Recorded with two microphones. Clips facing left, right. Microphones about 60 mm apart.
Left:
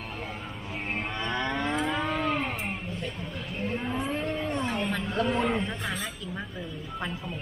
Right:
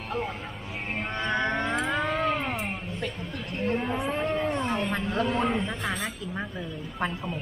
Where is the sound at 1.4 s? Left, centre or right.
Right.